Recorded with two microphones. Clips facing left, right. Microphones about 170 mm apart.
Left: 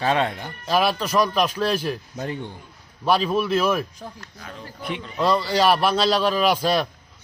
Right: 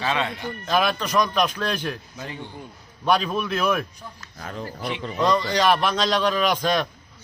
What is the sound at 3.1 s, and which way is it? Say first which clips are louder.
Speech: left 2 dB; 5° left (ahead or behind).